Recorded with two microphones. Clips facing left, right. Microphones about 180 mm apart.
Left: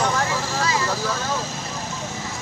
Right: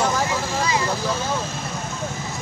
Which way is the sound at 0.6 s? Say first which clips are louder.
Right 1 dB; 20° right (ahead or behind).